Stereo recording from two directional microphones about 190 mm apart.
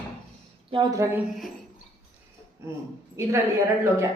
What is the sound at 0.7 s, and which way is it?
Speech, 25° right (ahead or behind).